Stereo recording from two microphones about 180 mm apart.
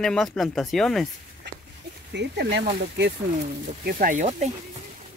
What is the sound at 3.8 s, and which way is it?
Speech, 55° right (ahead or behind).